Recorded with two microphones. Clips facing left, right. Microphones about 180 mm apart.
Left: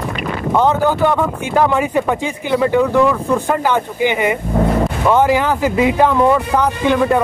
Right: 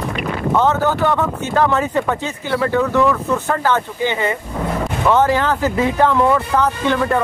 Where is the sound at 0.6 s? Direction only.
15° left (ahead or behind).